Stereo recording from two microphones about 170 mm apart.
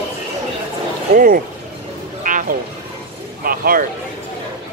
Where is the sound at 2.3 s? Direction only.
50° right (ahead or behind).